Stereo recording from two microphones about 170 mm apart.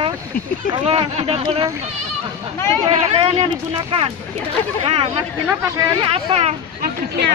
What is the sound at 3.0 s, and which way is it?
Speech, 35° right (ahead or behind).